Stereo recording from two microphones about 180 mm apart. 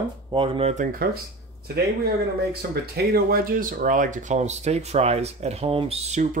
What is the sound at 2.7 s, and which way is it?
Speech, 60° right (ahead or behind).